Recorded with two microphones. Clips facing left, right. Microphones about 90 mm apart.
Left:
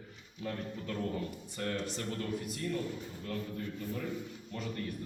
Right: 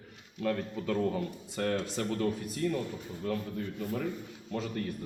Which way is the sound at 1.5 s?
90° right.